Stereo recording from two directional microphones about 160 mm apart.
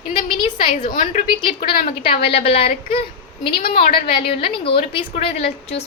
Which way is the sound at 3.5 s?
65° left (ahead or behind).